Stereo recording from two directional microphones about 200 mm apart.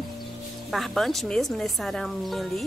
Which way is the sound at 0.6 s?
Centre (ahead or behind).